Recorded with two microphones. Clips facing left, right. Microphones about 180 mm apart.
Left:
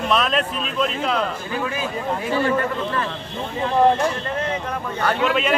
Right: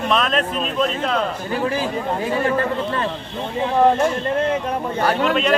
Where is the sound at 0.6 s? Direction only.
40° right (ahead or behind).